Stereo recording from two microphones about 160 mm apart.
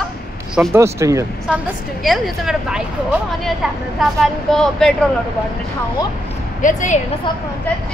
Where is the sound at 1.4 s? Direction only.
5° right (ahead or behind).